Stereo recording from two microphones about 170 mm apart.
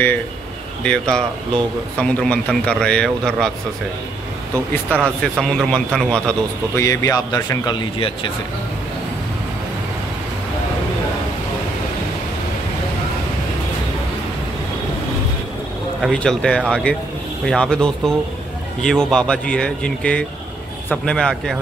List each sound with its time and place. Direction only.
0.8 s a man's voice: 5° left (ahead or behind)
4.9 s a man's voice: 10° left (ahead or behind)
6.8 s speech: 20° left (ahead or behind)
16.0 s a man's voice: 5° left (ahead or behind)